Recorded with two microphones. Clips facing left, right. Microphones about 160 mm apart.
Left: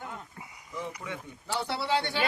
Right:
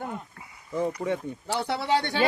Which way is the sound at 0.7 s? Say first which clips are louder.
Right 10 dB; 40° right (ahead or behind).